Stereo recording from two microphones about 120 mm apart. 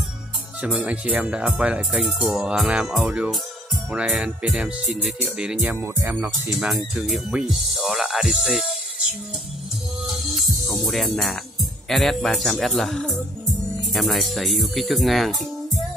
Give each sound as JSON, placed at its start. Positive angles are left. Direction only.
{"t": 0.6, "sound": "speech", "side_deg": -10}
{"t": 6.6, "sound": "speech", "side_deg": -5}
{"t": 10.3, "sound": "speech", "side_deg": 0}